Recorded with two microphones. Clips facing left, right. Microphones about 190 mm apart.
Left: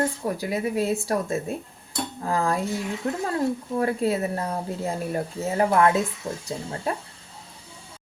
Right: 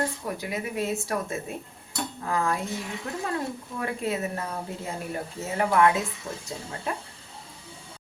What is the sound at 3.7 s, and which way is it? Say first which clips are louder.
Speech: left 4 dB; 35° left (ahead or behind).